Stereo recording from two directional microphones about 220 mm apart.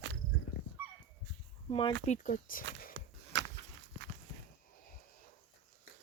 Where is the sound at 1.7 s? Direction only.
25° left (ahead or behind).